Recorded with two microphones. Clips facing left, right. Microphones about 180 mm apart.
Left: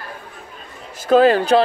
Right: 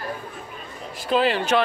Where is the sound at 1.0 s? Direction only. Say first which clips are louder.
Left 8 dB; 45° left (ahead or behind).